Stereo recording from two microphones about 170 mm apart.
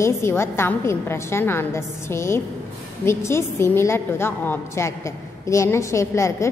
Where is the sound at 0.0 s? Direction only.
15° left (ahead or behind).